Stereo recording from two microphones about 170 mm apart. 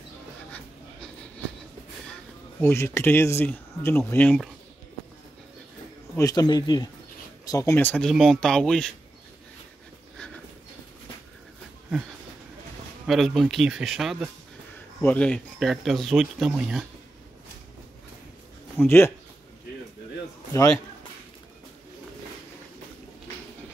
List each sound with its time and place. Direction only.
2.6 s speech: 15° left (ahead or behind)
6.1 s speech: 20° left (ahead or behind); by 8.9 s 5° left (ahead or behind)
10.1 s dog: 5° left (ahead or behind)
13.0 s speech: centre (ahead or behind)
15.0 s speech: 10° left (ahead or behind)
18.8 s speech: 15° left (ahead or behind)